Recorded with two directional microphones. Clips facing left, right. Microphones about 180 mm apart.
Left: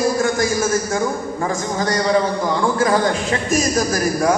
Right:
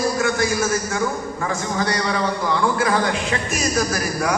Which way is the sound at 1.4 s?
40° left (ahead or behind).